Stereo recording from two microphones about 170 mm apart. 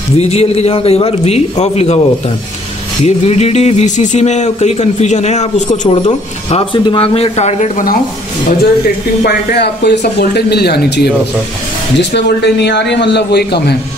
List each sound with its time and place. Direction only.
0.2 s speech: 40° left (ahead or behind)
3.1 s speech: 40° left (ahead or behind)
8.5 s speech: 65° left (ahead or behind)
12.0 s a man's voice: 90° left; by 13.7 s 75° left (ahead or behind)